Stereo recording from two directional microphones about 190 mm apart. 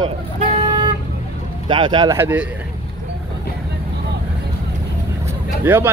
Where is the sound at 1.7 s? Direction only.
25° right (ahead or behind).